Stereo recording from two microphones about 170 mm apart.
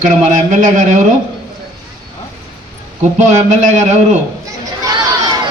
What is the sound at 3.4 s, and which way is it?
Speech, 45° right (ahead or behind).